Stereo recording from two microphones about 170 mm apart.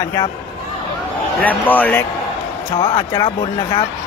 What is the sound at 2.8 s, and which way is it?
Speech, 30° left (ahead or behind).